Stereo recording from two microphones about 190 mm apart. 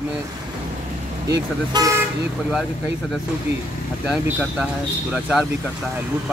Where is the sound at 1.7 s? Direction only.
20° right (ahead or behind).